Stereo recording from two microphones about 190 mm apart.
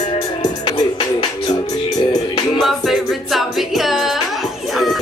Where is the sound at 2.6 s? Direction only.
Centre (ahead or behind).